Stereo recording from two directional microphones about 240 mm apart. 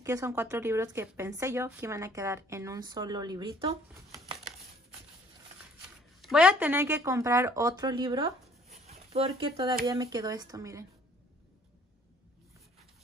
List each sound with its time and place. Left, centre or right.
0.0 s speech: centre
6.2 s speech: centre